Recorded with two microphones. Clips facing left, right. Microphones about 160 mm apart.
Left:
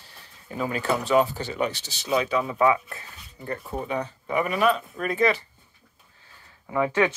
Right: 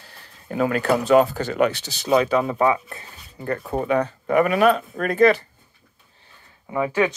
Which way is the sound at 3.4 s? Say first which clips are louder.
Right 6 dB; 60° right (ahead or behind).